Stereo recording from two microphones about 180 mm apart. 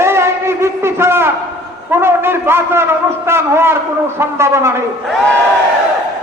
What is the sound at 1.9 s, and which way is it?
A man's voice, 15° right (ahead or behind).